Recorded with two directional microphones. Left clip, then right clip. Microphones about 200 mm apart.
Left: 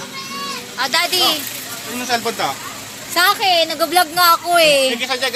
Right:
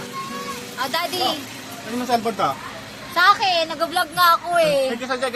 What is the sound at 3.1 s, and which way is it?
A woman's voice, 35° left (ahead or behind).